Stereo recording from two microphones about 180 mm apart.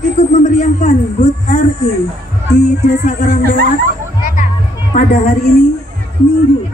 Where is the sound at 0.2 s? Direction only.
40° left (ahead or behind).